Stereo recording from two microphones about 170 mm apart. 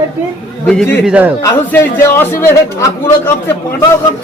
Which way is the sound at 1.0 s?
10° right (ahead or behind).